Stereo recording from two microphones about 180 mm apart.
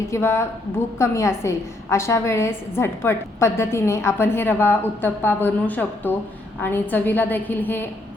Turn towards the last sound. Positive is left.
turn(degrees=10)  # may be behind; listen again after turning